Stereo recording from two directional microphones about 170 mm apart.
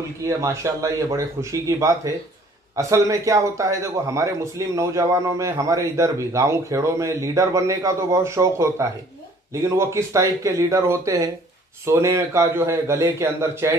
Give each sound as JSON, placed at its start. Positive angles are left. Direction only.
{"t": 0.4, "sound": "a man's voice", "side_deg": -20}